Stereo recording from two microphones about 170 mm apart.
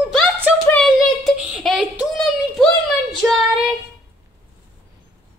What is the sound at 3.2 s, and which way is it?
Child singing, 5° right (ahead or behind).